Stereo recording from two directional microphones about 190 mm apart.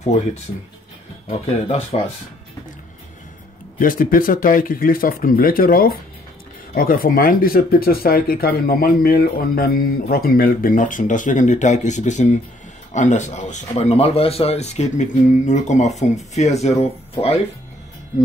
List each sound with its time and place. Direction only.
0.0 s speech: 40° left (ahead or behind)
3.7 s speech: 45° left (ahead or behind); by 17.4 s 30° left (ahead or behind)